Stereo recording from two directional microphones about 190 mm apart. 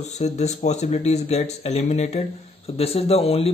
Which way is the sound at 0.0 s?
35° left (ahead or behind).